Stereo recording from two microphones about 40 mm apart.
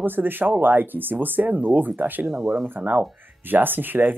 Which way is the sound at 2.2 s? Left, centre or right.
Right.